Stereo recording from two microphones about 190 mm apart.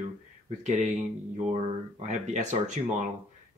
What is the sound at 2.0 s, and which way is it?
Speech, 40° right (ahead or behind).